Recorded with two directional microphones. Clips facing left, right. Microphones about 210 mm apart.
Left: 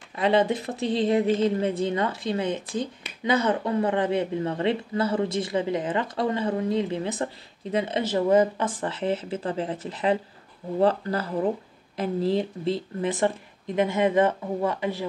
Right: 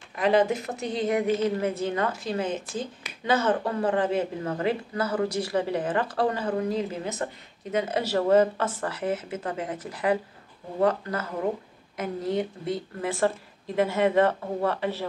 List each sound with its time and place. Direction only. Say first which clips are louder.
0.1 s speech: even; 25° left (ahead or behind)